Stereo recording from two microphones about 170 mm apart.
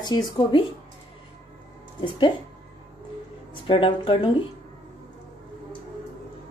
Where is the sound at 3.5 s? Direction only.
30° left (ahead or behind).